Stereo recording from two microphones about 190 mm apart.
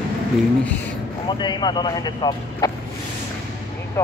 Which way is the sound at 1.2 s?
25° left (ahead or behind).